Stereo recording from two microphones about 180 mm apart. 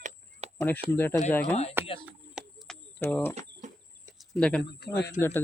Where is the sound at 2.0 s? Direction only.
5° right (ahead or behind).